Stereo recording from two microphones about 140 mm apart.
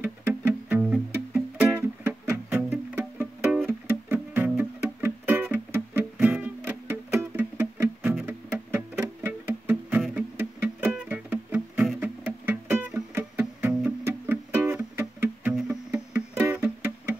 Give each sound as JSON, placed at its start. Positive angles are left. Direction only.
{"t": 0.0, "sound": "music", "side_deg": -15}
{"t": 15.5, "sound": "music", "side_deg": 0}
{"t": 16.1, "sound": "music", "side_deg": -15}